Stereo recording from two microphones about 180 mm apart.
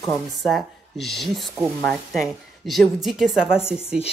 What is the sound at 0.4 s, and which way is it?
A woman's voice, centre (ahead or behind).